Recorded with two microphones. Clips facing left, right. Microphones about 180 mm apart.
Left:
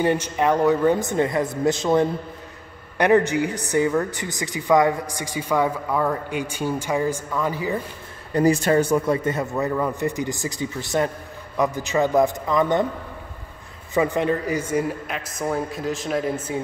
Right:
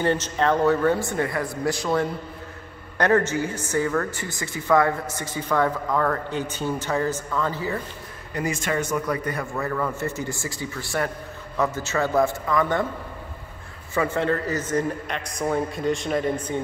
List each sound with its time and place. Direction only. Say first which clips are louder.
0.0 s a man's voice: left 2 dB; 15° left (ahead or behind)
8.3 s a man's voice: left 8 dB; 35° left (ahead or behind)
13.9 s a man's voice: left 2 dB; 15° left (ahead or behind)